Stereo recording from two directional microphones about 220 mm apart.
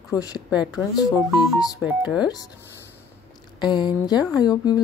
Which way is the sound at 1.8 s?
5° right (ahead or behind).